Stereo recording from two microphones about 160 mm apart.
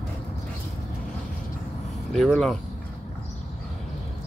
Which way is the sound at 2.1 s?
Centre (ahead or behind).